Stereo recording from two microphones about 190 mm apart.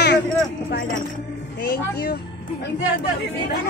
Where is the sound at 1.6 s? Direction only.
60° left (ahead or behind).